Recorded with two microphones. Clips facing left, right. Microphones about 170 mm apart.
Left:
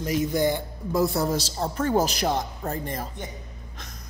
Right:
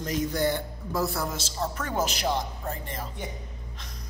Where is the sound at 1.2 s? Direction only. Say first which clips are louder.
Left 5 dB; 35° left (ahead or behind).